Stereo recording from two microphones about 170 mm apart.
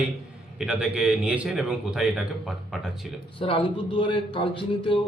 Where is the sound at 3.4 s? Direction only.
30° left (ahead or behind).